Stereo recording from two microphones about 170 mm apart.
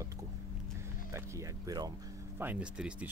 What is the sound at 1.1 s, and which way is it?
Speech, 15° right (ahead or behind).